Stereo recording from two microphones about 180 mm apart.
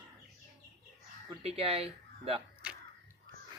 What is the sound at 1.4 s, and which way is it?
Speech, 35° right (ahead or behind).